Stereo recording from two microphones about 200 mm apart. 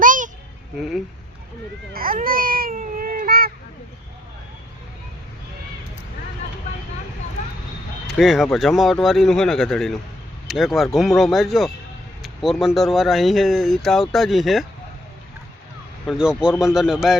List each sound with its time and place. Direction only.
0.0 s a sound: 40° right (ahead or behind)
1.9 s baby cry: 45° right (ahead or behind)
8.2 s speech: centre (ahead or behind)
16.0 s speech: 5° right (ahead or behind)